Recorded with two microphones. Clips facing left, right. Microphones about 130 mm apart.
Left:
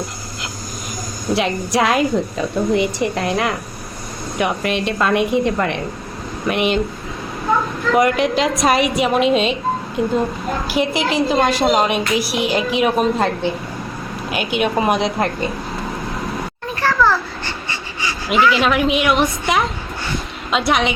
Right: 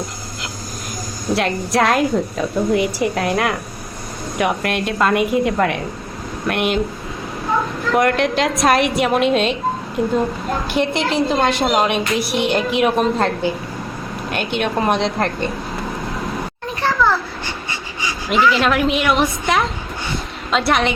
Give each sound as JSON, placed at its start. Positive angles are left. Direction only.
{"t": 1.3, "sound": "a woman's voice", "side_deg": 0}
{"t": 7.9, "sound": "a woman's voice", "side_deg": 0}
{"t": 16.8, "sound": "babbling", "side_deg": -15}
{"t": 18.6, "sound": "a woman's voice", "side_deg": 0}